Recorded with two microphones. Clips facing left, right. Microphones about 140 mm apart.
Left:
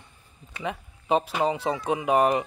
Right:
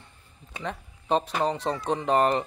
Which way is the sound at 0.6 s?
5° left (ahead or behind).